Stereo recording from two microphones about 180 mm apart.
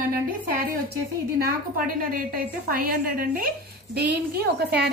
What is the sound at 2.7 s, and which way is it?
A woman's voice, 55° right (ahead or behind).